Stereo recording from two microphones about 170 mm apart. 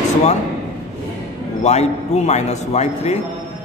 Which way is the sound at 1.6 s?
40° left (ahead or behind).